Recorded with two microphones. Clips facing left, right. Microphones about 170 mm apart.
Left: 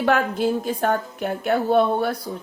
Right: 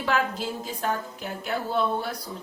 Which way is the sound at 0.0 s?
60° left (ahead or behind).